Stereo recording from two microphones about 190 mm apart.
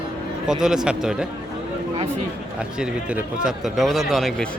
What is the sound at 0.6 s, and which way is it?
Speech, 5° right (ahead or behind).